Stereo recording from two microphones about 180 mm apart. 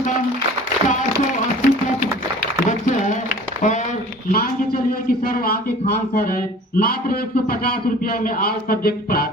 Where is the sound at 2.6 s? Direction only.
40° left (ahead or behind).